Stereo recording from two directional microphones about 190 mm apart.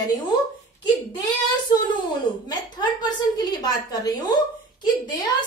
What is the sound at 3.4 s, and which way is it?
A woman's voice, 20° left (ahead or behind).